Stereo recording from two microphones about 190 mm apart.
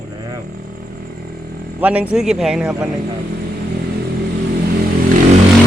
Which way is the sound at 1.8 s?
5° right (ahead or behind).